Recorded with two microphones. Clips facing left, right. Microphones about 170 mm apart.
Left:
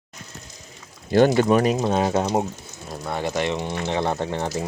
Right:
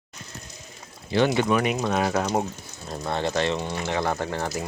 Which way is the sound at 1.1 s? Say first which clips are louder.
Left 5 dB; 45° left (ahead or behind).